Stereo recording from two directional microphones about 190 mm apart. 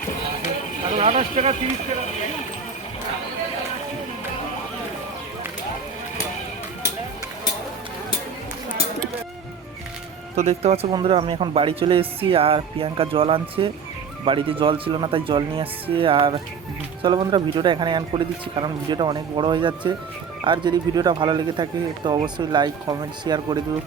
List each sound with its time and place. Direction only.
0.9 s speech: 35° right (ahead or behind)
10.3 s speech: 35° right (ahead or behind)